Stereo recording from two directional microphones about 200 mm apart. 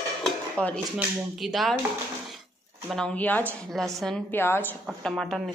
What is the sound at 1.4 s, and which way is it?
Speech, centre (ahead or behind).